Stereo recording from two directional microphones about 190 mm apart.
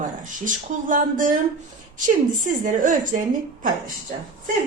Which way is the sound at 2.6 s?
40° right (ahead or behind).